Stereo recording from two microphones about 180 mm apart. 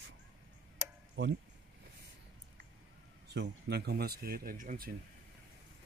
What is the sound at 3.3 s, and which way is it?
Speech, 65° right (ahead or behind).